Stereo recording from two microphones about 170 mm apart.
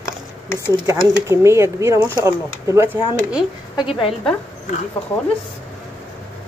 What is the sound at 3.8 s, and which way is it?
Speech, 30° left (ahead or behind).